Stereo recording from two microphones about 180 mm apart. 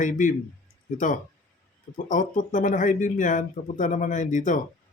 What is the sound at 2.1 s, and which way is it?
Speech, 45° left (ahead or behind).